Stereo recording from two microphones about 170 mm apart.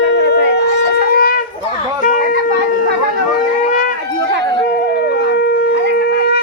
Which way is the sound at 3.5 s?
50° left (ahead or behind).